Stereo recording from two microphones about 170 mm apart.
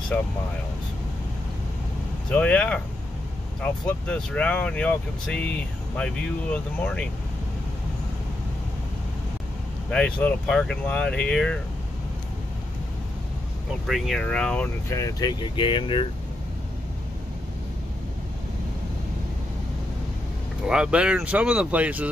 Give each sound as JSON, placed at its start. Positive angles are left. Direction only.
{"t": 0.1, "sound": "speech", "side_deg": 10}
{"t": 2.2, "sound": "speech", "side_deg": 5}
{"t": 9.8, "sound": "speech", "side_deg": 5}
{"t": 13.8, "sound": "speech", "side_deg": 0}
{"t": 20.6, "sound": "speech", "side_deg": -5}